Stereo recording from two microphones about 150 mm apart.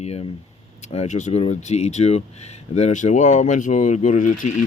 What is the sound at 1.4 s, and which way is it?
Speech, 45° left (ahead or behind).